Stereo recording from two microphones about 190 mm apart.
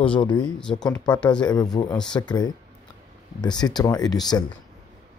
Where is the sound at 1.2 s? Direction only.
5° left (ahead or behind).